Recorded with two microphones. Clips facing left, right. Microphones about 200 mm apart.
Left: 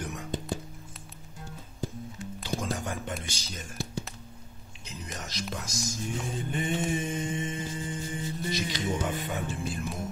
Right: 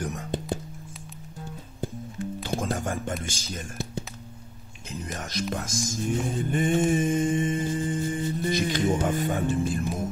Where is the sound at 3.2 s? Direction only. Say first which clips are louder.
Right 5 dB; 50° right (ahead or behind).